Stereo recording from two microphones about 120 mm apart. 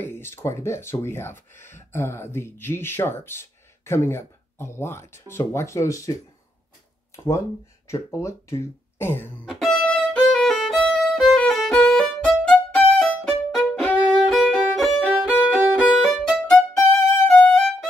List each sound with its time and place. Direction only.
0.0 s speech: 20° left (ahead or behind)
7.2 s speech: 30° left (ahead or behind)
9.5 s violin: centre (ahead or behind)